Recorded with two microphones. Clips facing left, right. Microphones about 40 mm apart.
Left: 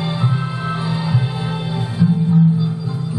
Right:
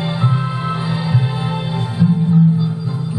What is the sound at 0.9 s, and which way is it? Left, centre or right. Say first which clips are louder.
Heart sounds: even; centre.